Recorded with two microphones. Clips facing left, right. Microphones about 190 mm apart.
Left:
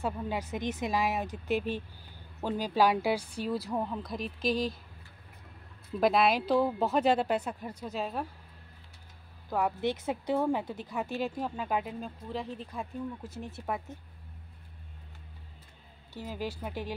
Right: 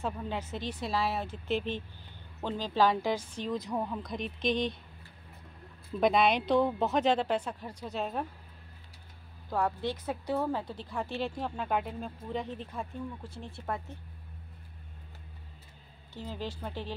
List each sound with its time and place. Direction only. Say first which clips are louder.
0.0 s a woman's voice: left 2 dB; 10° left (ahead or behind)
5.9 s speech: even; 5° left (ahead or behind)
9.5 s a woman's voice: left 1 dB; 5° left (ahead or behind)
9.8 s a woman's voice: left 3 dB; 20° left (ahead or behind); by 12.4 s centre (ahead or behind)
13.6 s a woman's voice: left 1 dB; 10° left (ahead or behind)
16.2 s a woman's voice: left 2 dB; 10° left (ahead or behind)